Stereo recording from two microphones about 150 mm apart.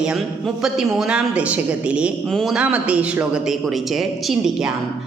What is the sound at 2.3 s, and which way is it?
Music, centre (ahead or behind).